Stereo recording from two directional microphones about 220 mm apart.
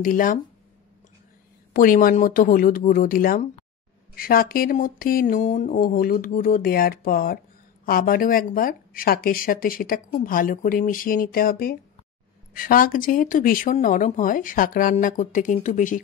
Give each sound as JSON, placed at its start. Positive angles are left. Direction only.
{"t": 0.0, "sound": "speech", "side_deg": 40}
{"t": 1.7, "sound": "speech", "side_deg": 40}